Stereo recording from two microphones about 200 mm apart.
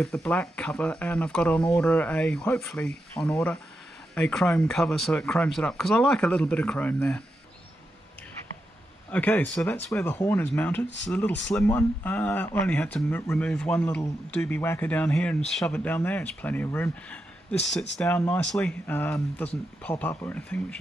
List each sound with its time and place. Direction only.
0.0 s speech: centre (ahead or behind)
9.1 s speech: 10° left (ahead or behind)